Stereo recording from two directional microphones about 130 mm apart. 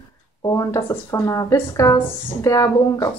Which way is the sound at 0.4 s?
25° left (ahead or behind).